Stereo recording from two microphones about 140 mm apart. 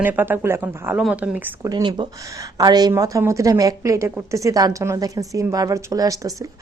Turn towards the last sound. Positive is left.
turn(degrees=-25)  # may be behind; listen again after turning